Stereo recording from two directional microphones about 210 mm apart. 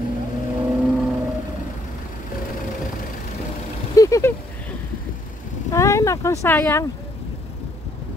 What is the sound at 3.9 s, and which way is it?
Vehicle, 15° left (ahead or behind).